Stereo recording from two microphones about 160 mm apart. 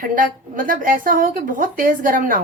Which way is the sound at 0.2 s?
60° right (ahead or behind).